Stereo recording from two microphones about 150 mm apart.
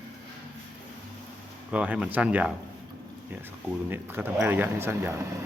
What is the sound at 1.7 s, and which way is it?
Speech, 5° right (ahead or behind).